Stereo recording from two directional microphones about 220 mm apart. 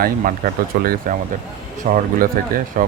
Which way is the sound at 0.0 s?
40° right (ahead or behind).